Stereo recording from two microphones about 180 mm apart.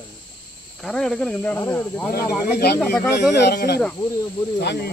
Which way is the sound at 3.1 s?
65° left (ahead or behind).